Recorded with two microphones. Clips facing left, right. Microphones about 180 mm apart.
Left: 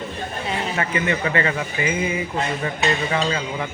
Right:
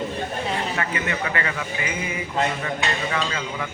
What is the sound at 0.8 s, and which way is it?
Speech, 25° left (ahead or behind).